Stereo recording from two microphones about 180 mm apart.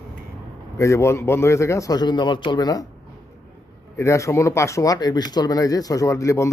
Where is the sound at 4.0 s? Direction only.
15° left (ahead or behind).